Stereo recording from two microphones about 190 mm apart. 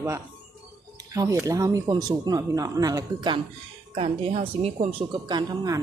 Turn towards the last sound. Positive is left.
turn(degrees=-20)  # may be behind; listen again after turning